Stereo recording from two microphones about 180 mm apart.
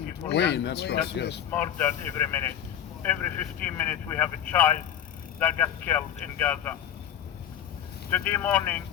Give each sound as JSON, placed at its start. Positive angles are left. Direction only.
{"t": 0.3, "sound": "speech", "side_deg": 70}
{"t": 1.5, "sound": "speech", "side_deg": 10}
{"t": 8.1, "sound": "speech", "side_deg": 10}